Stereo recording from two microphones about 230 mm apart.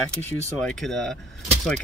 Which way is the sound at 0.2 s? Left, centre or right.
Centre.